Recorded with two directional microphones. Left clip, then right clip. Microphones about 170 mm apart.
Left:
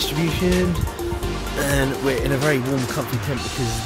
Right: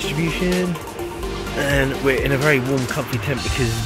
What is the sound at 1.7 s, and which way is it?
Speech, 10° left (ahead or behind).